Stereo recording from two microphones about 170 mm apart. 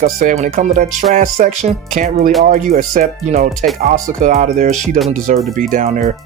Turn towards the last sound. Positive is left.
turn(degrees=-45)  # may be behind; listen again after turning